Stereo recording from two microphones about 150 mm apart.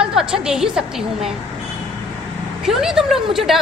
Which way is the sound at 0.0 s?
5° right (ahead or behind).